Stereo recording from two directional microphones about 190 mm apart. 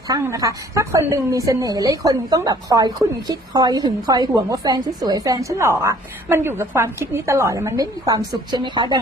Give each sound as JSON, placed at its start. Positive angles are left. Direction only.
{"t": 0.1, "sound": "a woman's voice", "side_deg": -15}